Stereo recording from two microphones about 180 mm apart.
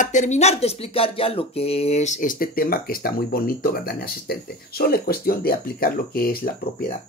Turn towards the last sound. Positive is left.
turn(degrees=55)  # may be behind; listen again after turning